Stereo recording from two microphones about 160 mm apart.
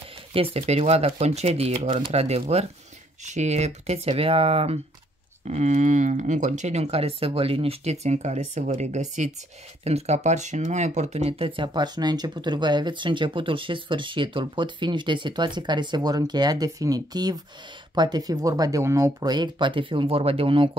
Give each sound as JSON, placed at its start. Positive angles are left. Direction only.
{"t": 0.3, "sound": "speech", "side_deg": -35}
{"t": 5.5, "sound": "speech", "side_deg": -50}